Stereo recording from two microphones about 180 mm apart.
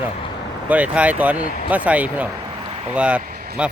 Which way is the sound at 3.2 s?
55° right (ahead or behind).